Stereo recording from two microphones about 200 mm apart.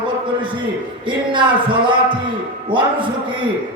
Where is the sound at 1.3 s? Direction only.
25° right (ahead or behind).